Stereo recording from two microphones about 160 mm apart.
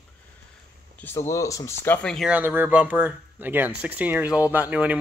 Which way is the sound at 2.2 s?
10° right (ahead or behind).